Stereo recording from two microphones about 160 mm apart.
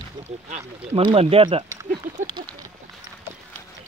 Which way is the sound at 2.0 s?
60° right (ahead or behind).